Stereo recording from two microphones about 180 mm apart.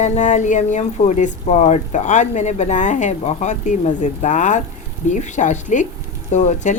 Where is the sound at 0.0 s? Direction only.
40° left (ahead or behind).